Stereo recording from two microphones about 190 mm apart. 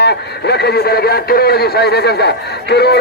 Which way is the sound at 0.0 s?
60° left (ahead or behind).